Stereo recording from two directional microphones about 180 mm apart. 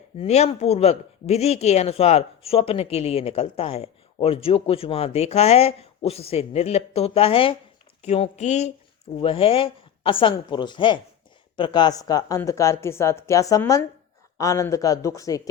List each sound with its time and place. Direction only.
0.2 s speech: 35° left (ahead or behind); by 15.4 s 20° left (ahead or behind)